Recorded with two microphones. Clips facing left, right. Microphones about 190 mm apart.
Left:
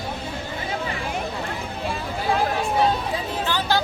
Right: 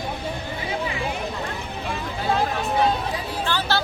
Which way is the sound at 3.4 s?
15° left (ahead or behind).